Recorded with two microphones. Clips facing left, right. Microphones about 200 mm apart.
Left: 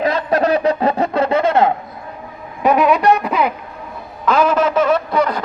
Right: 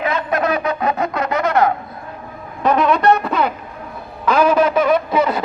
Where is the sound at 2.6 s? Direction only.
10° left (ahead or behind).